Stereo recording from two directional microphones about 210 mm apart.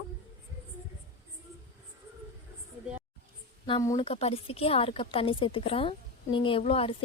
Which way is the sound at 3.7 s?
20° left (ahead or behind).